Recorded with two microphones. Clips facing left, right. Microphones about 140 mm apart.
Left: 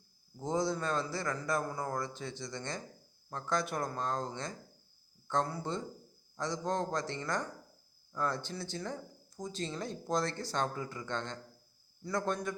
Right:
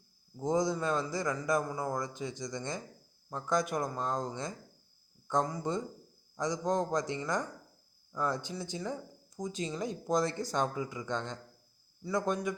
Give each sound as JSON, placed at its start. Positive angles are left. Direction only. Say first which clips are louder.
{"t": 0.3, "sound": "a man's voice", "louder": "right 3 dB", "side_deg": -15}